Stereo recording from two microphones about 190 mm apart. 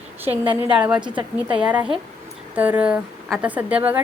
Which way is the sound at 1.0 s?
25° right (ahead or behind).